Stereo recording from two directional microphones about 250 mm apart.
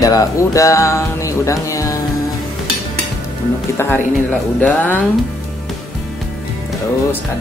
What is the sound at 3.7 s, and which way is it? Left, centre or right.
Speech, centre.